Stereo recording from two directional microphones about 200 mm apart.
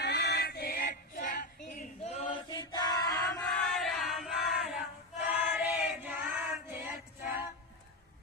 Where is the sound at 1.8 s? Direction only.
30° left (ahead or behind).